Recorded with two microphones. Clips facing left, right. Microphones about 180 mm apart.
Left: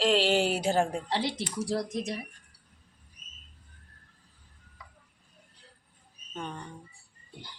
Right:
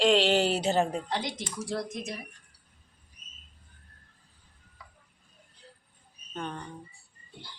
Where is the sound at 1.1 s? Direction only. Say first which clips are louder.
Left 3 dB; 30° left (ahead or behind).